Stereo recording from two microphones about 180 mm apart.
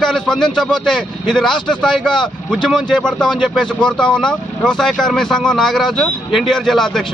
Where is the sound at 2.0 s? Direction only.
25° left (ahead or behind).